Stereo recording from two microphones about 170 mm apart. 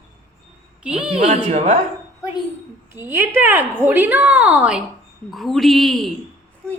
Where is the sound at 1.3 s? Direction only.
45° right (ahead or behind).